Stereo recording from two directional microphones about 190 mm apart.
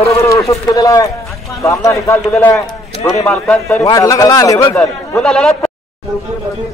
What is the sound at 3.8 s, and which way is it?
Speech, 20° left (ahead or behind).